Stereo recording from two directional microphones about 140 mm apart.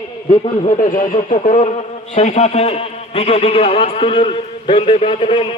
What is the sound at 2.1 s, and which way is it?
A man's voice, 55° left (ahead or behind).